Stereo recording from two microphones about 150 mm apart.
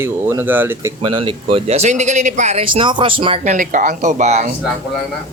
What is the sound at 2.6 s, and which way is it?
Speech, 35° right (ahead or behind).